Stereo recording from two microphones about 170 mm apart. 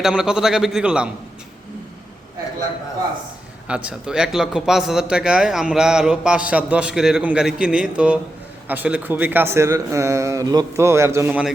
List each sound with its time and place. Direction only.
0.0 s speech: 5° right (ahead or behind)
3.7 s speech: 5° right (ahead or behind)